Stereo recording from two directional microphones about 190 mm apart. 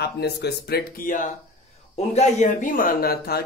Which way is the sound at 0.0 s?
60° left (ahead or behind).